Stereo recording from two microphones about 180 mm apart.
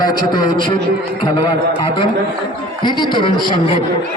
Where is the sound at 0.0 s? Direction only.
25° left (ahead or behind).